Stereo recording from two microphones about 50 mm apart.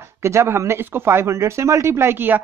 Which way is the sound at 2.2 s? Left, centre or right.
Right.